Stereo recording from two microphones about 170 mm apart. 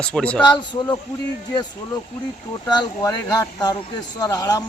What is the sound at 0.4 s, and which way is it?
Speech, 25° left (ahead or behind).